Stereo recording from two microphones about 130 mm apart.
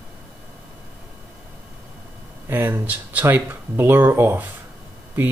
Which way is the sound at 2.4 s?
20° right (ahead or behind).